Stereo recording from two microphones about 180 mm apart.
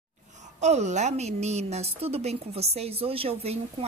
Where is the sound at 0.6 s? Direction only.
40° right (ahead or behind).